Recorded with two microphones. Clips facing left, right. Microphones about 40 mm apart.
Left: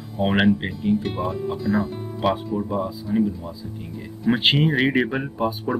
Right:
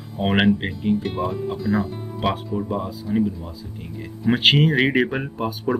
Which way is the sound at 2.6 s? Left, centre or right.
Centre.